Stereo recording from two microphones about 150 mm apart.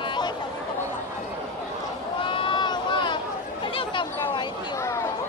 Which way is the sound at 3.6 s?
35° left (ahead or behind).